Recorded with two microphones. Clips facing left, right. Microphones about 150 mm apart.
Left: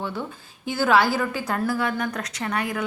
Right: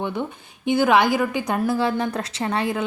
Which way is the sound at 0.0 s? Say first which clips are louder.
Right 4 dB; 20° right (ahead or behind).